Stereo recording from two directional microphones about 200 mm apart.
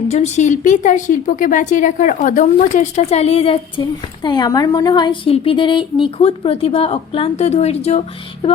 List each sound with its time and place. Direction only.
0.1 s a woman's voice: 35° left (ahead or behind)